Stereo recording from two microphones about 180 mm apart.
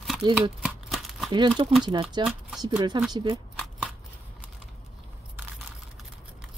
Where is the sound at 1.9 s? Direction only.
25° right (ahead or behind).